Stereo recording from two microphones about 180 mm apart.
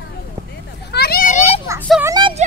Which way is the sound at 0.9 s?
60° left (ahead or behind).